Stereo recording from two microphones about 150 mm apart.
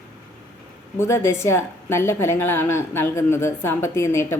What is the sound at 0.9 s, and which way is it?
A woman's voice, 20° left (ahead or behind).